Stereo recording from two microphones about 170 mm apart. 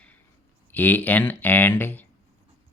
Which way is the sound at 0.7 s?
10° left (ahead or behind).